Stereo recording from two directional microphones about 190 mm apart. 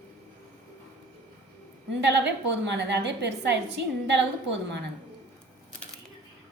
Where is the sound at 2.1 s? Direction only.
65° right (ahead or behind).